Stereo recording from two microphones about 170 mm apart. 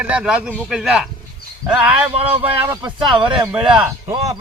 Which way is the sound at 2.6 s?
25° right (ahead or behind).